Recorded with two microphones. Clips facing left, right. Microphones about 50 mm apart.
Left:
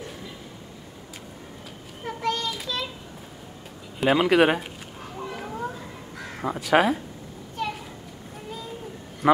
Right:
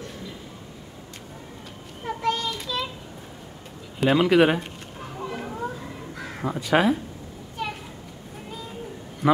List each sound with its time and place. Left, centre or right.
2.0 s child singing: centre
4.0 s speech: centre
5.2 s children playing: centre
6.1 s crow: centre
6.4 s speech: centre
7.6 s children playing: centre